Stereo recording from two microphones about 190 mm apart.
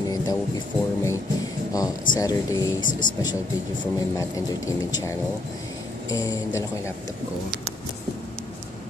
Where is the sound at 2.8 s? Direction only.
45° left (ahead or behind).